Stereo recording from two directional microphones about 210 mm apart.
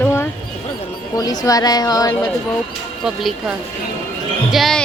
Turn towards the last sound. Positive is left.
turn(degrees=0)  # may be behind; listen again after turning